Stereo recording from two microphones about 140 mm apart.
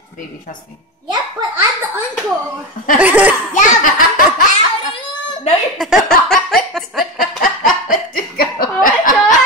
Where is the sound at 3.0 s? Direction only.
10° right (ahead or behind).